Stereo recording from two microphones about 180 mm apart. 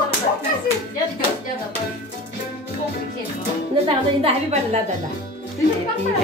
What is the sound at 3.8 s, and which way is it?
Speech, 35° right (ahead or behind).